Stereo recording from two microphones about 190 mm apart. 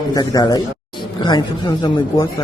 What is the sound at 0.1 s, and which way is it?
Speech, 20° left (ahead or behind).